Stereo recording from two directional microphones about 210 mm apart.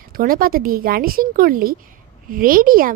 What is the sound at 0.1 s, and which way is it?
Speech, 45° right (ahead or behind).